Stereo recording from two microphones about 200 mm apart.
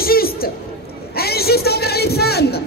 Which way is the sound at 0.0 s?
50° left (ahead or behind).